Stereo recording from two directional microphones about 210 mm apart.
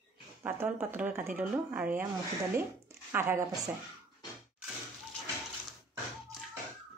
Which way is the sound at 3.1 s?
10° right (ahead or behind).